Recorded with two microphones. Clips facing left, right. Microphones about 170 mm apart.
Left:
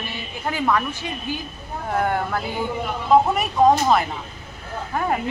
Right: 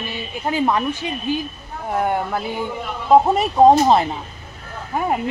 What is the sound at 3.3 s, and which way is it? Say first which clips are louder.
Speech: right 4 dB; 30° right (ahead or behind).